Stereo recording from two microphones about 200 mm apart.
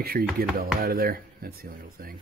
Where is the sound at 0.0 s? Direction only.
45° right (ahead or behind).